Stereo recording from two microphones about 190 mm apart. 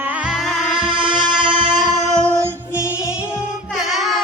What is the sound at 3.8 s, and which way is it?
Music, centre (ahead or behind).